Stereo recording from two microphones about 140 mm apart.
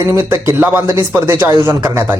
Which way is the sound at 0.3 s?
20° right (ahead or behind).